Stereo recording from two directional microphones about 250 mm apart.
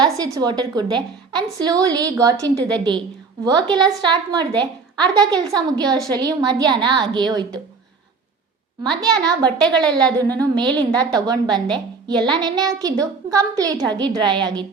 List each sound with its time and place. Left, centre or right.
0.0 s a woman's voice: centre
8.8 s a woman's voice: centre
9.6 s a woman's voice: centre
10.2 s a woman's voice: centre